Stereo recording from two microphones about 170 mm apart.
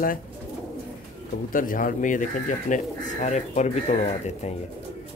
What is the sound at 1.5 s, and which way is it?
Speech, 55° left (ahead or behind).